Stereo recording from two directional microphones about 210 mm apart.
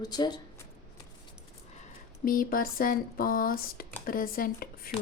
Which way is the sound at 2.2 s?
40° left (ahead or behind).